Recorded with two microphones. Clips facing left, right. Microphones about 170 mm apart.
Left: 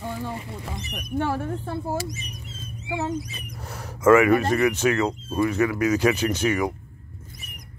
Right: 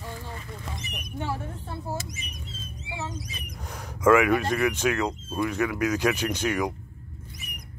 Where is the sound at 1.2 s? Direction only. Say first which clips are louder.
Left 7 dB; 60° left (ahead or behind).